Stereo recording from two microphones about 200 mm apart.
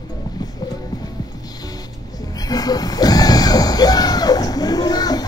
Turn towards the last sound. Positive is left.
turn(degrees=20)  # may be behind; listen again after turning